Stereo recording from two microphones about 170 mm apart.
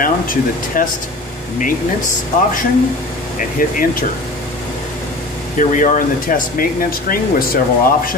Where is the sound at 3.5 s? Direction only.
55° left (ahead or behind).